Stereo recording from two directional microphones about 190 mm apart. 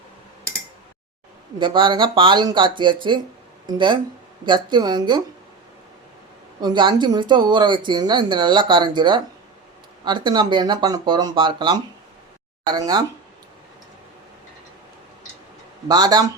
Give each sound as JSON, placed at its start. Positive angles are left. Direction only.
{"t": 1.5, "sound": "speech", "side_deg": -25}
{"t": 6.6, "sound": "speech", "side_deg": -25}
{"t": 15.9, "sound": "speech", "side_deg": -20}